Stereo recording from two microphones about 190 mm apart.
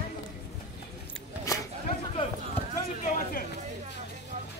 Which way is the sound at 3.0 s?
45° left (ahead or behind).